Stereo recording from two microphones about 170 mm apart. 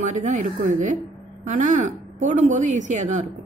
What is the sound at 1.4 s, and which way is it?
A woman's voice, 50° right (ahead or behind).